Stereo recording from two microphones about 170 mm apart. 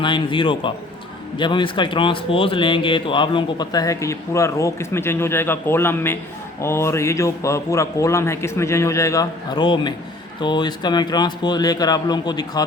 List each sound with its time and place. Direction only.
0.0 s a man's voice: 30° left (ahead or behind)